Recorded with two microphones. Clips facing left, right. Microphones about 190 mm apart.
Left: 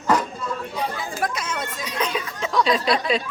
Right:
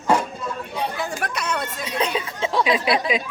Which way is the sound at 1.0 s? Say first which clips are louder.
Even; 70° right (ahead or behind).